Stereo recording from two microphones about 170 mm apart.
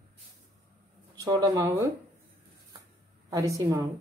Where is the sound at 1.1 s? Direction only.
25° right (ahead or behind).